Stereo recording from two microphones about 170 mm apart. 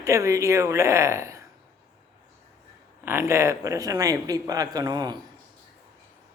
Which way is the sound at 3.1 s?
15° right (ahead or behind).